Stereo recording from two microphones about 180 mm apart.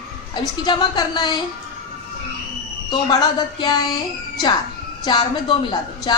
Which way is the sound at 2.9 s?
25° left (ahead or behind).